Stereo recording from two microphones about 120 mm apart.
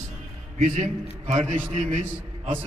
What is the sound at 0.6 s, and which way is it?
A man's voice, 85° right.